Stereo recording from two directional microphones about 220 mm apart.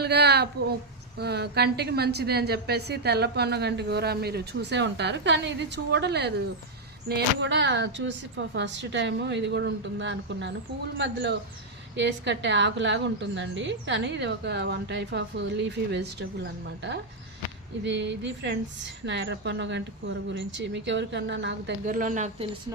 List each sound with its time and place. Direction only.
0.0 s a sound: 50° right (ahead or behind)
1.2 s a woman's voice: 50° right (ahead or behind)
21.8 s speech: 35° right (ahead or behind)